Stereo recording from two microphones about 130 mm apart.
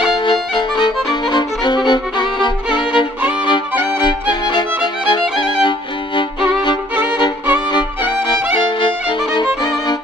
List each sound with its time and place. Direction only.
0.2 s violin: 40° left (ahead or behind)
3.4 s music: 35° left (ahead or behind)
6.6 s violin: 35° left (ahead or behind)